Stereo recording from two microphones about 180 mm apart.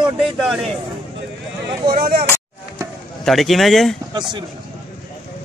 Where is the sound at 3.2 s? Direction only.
Centre (ahead or behind).